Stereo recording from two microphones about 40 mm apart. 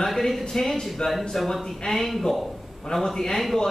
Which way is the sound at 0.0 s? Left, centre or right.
Centre.